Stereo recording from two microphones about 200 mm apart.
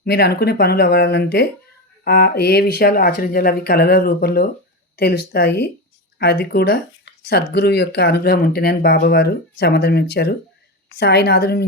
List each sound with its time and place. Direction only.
0.0 s speech: 55° left (ahead or behind)